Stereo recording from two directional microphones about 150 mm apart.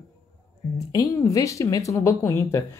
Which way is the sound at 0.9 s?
20° left (ahead or behind).